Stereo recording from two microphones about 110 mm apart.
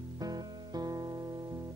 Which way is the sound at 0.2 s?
35° right (ahead or behind).